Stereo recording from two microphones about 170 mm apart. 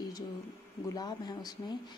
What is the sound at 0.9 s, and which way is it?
Speech, 25° left (ahead or behind).